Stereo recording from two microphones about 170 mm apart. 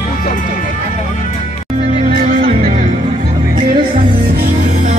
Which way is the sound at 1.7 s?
50° right (ahead or behind).